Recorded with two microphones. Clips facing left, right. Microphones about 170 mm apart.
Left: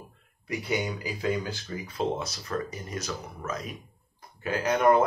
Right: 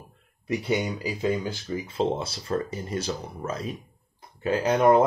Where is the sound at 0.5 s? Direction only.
25° right (ahead or behind).